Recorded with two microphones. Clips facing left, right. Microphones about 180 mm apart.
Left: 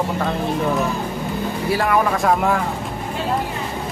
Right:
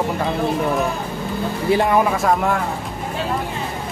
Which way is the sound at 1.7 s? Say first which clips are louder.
Right 4 dB; 20° right (ahead or behind).